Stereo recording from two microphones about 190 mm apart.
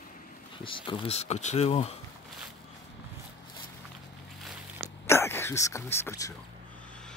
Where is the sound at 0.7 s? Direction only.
25° left (ahead or behind).